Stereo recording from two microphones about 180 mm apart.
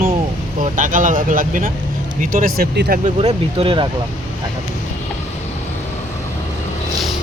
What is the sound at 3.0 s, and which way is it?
Speech, 35° right (ahead or behind).